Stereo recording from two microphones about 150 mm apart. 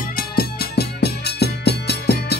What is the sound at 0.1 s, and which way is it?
Music, 90° left.